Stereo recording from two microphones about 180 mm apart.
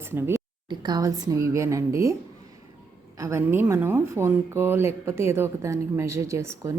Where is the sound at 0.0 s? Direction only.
15° right (ahead or behind).